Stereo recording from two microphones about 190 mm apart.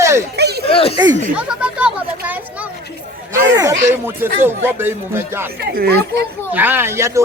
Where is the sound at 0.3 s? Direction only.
60° right (ahead or behind).